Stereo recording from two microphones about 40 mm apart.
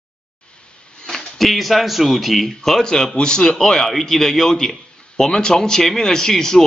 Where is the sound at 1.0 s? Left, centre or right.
Centre.